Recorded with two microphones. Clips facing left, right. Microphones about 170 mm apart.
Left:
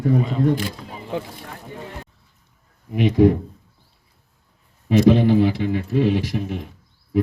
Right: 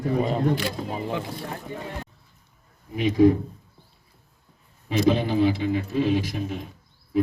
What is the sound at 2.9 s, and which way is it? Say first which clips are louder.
Speech: left 2 dB; 65° left (ahead or behind).